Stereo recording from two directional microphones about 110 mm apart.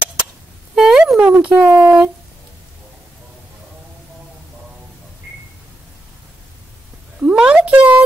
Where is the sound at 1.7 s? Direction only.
25° right (ahead or behind).